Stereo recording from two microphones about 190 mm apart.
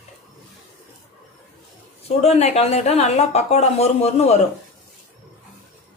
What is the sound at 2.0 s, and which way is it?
Speech, 35° left (ahead or behind).